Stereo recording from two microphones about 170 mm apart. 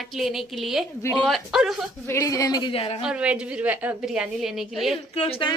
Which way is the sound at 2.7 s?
35° left (ahead or behind).